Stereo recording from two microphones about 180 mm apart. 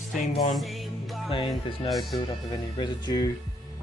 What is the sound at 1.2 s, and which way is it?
Speech, 30° left (ahead or behind).